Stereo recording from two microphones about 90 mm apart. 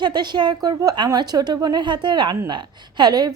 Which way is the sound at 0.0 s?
55° right (ahead or behind).